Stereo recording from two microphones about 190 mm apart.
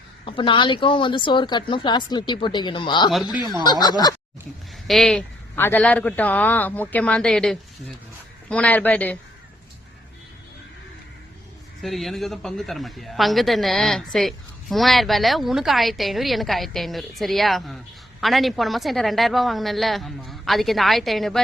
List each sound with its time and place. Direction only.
0.3 s speech: 25° left (ahead or behind)
4.9 s a man's voice: centre (ahead or behind)
11.8 s a man's voice: centre (ahead or behind)